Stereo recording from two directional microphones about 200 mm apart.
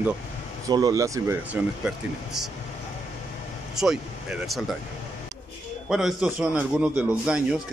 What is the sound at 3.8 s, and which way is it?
Speech, centre (ahead or behind).